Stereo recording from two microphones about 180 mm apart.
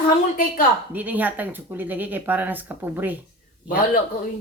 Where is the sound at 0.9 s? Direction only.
10° right (ahead or behind).